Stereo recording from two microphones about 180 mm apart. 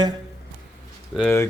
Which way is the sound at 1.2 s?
15° left (ahead or behind).